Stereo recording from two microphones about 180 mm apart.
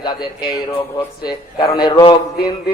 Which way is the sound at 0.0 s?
25° left (ahead or behind).